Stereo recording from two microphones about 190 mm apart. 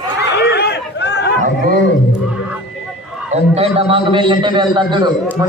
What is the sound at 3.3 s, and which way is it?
A man's voice, 30° right (ahead or behind).